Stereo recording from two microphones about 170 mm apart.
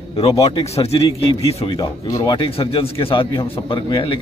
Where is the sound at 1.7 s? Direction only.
20° left (ahead or behind).